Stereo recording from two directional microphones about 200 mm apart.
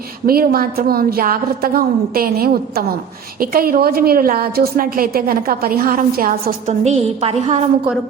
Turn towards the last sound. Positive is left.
turn(degrees=-30)  # may be behind; listen again after turning